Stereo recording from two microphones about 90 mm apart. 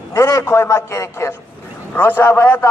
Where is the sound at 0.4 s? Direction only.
30° left (ahead or behind).